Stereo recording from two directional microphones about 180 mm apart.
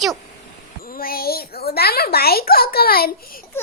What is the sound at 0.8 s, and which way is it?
A woman's voice, 55° left (ahead or behind).